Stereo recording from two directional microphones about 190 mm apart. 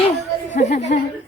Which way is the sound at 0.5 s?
40° left (ahead or behind).